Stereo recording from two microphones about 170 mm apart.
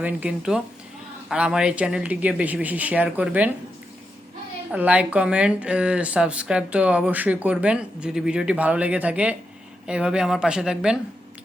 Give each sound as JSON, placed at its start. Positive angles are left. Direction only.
{"t": 0.0, "sound": "speech", "side_deg": -5}
{"t": 4.7, "sound": "speech", "side_deg": -10}